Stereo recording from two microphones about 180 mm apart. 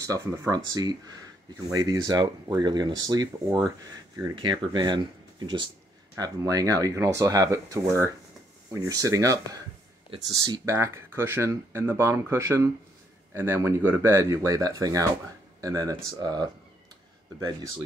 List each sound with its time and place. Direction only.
0.0 s speech: 20° right (ahead or behind)
6.1 s speech: 20° right (ahead or behind)